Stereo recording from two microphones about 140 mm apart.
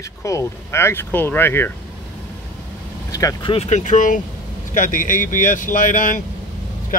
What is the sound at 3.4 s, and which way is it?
Speech, 45° left (ahead or behind).